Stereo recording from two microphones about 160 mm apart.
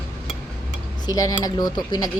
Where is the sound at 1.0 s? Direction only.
20° left (ahead or behind).